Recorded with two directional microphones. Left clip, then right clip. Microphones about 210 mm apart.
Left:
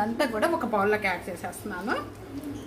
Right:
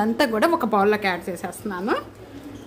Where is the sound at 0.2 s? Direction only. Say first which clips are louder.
Right 7 dB; 50° right (ahead or behind).